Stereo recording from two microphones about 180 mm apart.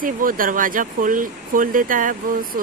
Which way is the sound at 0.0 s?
50° right (ahead or behind).